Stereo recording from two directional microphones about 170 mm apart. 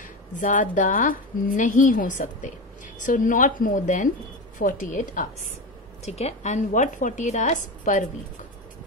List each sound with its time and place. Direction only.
0.0 s a woman's voice: 50° left (ahead or behind)